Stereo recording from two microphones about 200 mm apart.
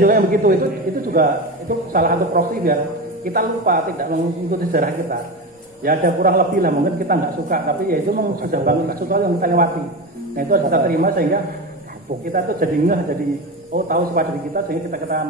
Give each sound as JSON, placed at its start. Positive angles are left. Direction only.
{"t": 0.0, "sound": "a man's voice", "side_deg": -45}